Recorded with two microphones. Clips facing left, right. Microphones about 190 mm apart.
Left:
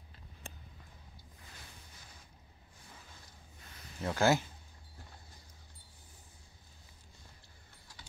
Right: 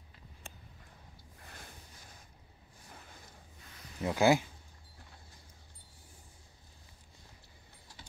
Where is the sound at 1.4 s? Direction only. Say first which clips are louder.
Right 4 dB; 55° right (ahead or behind).